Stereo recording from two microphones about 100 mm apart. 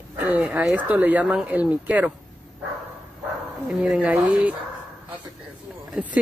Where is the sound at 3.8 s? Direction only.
15° right (ahead or behind).